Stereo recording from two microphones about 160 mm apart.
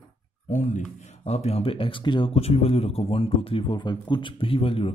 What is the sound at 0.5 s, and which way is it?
Speech, 50° left (ahead or behind).